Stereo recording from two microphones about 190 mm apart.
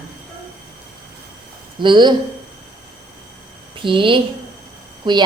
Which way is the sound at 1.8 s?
25° right (ahead or behind).